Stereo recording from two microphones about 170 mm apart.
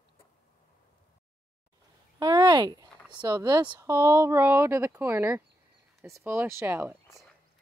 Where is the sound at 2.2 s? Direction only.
25° right (ahead or behind).